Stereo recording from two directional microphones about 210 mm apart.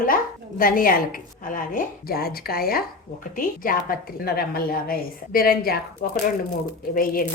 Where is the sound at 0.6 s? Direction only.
45° left (ahead or behind).